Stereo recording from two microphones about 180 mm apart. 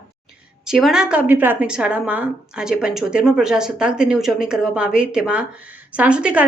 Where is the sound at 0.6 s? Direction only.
Centre (ahead or behind).